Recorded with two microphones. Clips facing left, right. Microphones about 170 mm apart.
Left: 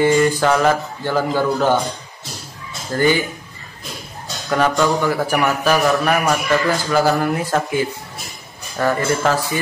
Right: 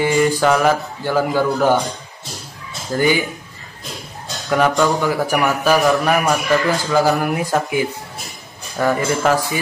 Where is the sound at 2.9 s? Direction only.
10° right (ahead or behind).